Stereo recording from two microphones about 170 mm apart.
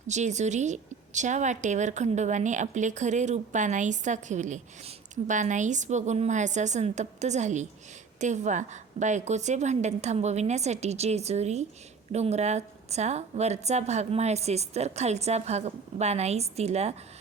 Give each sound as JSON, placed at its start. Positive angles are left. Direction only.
{"t": 0.1, "sound": "a woman's voice", "side_deg": -45}